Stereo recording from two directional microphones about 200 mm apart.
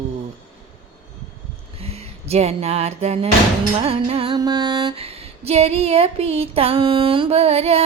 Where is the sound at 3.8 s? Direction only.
30° right (ahead or behind).